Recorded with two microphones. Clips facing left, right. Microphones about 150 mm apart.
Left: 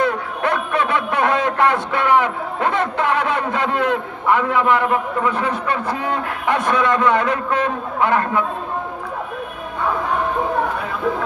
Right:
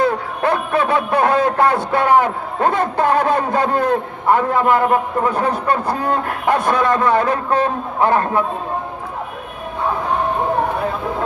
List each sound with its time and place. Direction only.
0.0 s a man's voice: 35° right (ahead or behind)